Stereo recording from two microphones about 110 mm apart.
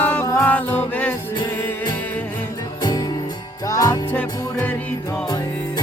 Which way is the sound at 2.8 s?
40° left (ahead or behind).